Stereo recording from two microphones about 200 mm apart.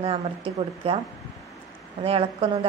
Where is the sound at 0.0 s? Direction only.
30° right (ahead or behind).